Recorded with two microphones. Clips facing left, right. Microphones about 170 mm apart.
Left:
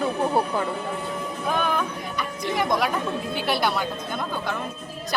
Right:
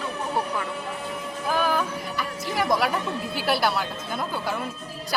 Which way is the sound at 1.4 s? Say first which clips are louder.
Right 1 dB; 5° right (ahead or behind).